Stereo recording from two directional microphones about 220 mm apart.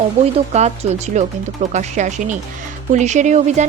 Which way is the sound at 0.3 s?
30° right (ahead or behind).